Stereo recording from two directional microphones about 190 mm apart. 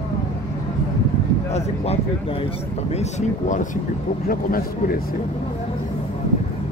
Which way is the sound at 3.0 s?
40° left (ahead or behind).